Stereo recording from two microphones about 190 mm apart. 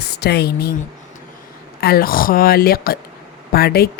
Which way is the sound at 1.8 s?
55° left (ahead or behind).